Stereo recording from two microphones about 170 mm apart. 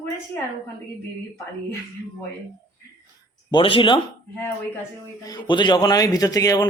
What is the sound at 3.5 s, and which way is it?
Speech, 30° left (ahead or behind).